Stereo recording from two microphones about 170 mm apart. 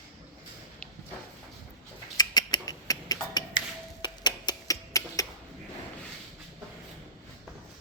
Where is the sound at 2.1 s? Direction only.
25° left (ahead or behind).